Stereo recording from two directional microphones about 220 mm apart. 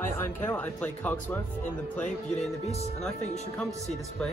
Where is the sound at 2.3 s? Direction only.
30° left (ahead or behind).